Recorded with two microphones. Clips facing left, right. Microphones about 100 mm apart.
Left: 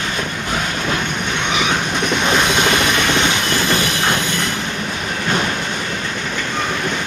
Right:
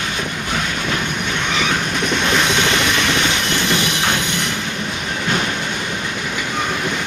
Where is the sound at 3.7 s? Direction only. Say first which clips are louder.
Left 1 dB; 20° right (ahead or behind).